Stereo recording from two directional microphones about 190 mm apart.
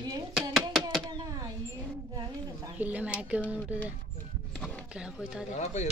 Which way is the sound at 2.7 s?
10° right (ahead or behind).